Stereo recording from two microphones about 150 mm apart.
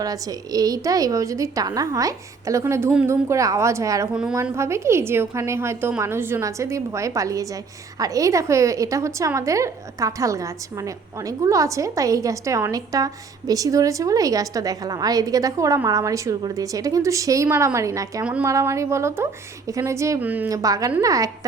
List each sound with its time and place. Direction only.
0.0 s a woman's voice: 25° right (ahead or behind)
4.1 s a woman's voice: 5° right (ahead or behind)
4.5 s a woman's voice: 20° right (ahead or behind)
18.2 s a woman's voice: 10° right (ahead or behind)
18.4 s a woman's voice: 20° right (ahead or behind)
20.5 s a woman's voice: 25° right (ahead or behind)